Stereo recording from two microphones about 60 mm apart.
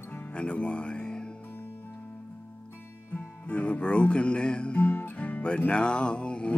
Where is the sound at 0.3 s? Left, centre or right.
Centre.